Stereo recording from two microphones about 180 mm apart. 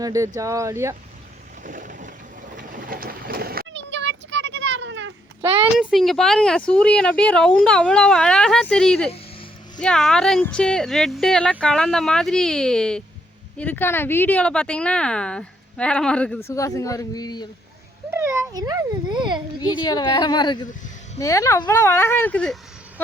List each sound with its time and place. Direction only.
0.0 s speech: 20° right (ahead or behind)
1.6 s a sound: 50° right (ahead or behind); by 5.1 s 90° right
5.9 s a woman's voice: centre (ahead or behind); by 17.5 s 25° left (ahead or behind)
18.1 s a child's voice: 15° right (ahead or behind)
19.6 s a woman's voice: 20° left (ahead or behind)